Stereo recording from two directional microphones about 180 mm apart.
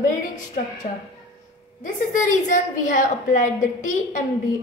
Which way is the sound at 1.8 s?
45° left (ahead or behind).